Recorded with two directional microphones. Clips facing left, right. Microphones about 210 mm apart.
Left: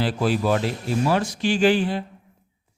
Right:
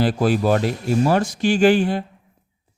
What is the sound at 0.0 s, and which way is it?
Speech, 45° right (ahead or behind).